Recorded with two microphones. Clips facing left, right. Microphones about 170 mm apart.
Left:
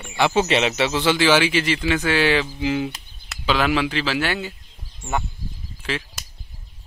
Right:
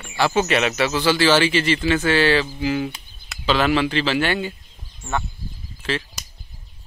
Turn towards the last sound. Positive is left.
turn(degrees=10)  # may be behind; listen again after turning